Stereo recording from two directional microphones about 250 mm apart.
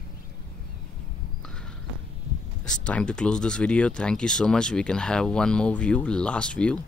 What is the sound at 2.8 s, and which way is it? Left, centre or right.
Speech, centre.